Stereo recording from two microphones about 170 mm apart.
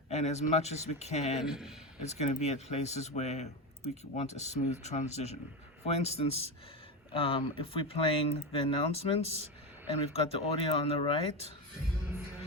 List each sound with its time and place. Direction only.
0.1 s speech: 40° left (ahead or behind)
1.5 s a man's voice: 5° right (ahead or behind)
2.0 s speech: 40° left (ahead or behind)